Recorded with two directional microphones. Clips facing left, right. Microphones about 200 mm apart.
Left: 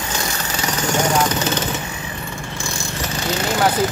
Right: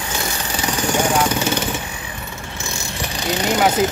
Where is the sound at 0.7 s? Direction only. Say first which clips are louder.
Right 1 dB; 15° right (ahead or behind).